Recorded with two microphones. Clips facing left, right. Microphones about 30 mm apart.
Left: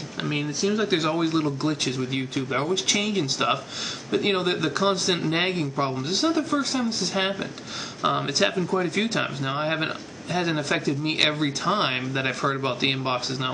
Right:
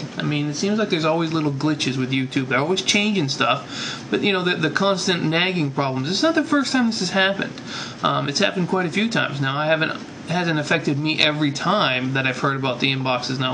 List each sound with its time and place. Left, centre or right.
0.2 s speech: centre